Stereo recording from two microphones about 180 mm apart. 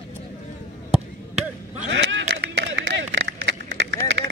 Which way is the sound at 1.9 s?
85° right.